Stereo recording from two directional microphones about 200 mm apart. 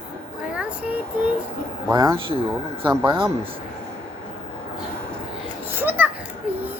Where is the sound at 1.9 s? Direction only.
20° right (ahead or behind).